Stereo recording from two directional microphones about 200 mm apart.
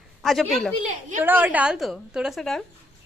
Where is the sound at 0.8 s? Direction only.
40° right (ahead or behind).